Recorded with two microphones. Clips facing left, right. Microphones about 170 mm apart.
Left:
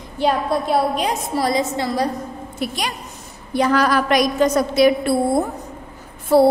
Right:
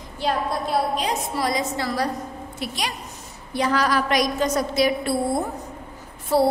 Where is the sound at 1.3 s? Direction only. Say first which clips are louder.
Left 5 dB; 30° left (ahead or behind).